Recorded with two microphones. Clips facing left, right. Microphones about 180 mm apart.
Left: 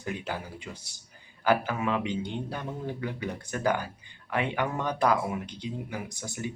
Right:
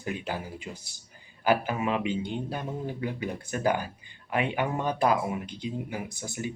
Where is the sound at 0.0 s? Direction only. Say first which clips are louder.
Right 1 dB; 15° right (ahead or behind).